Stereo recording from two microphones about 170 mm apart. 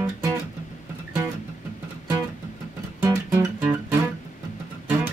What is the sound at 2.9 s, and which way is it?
Music, 20° right (ahead or behind).